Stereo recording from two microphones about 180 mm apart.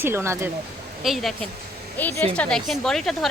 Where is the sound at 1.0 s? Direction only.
Centre (ahead or behind).